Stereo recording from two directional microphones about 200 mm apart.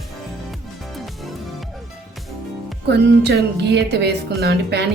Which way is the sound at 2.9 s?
55° right (ahead or behind).